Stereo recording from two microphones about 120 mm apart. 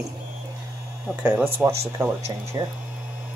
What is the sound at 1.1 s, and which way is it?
Speech, 15° right (ahead or behind).